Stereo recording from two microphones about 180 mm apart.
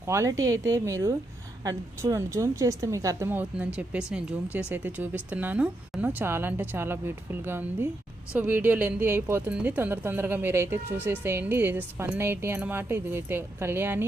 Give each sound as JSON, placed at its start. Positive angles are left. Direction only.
{"t": 0.0, "sound": "speech", "side_deg": -15}